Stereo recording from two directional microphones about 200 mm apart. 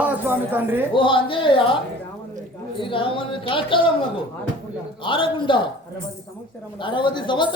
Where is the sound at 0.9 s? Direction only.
25° left (ahead or behind).